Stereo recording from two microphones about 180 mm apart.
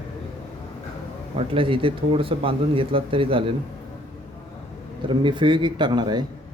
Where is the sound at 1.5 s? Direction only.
30° right (ahead or behind).